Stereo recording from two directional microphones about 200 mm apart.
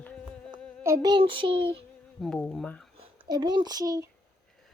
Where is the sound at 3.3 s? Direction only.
20° right (ahead or behind).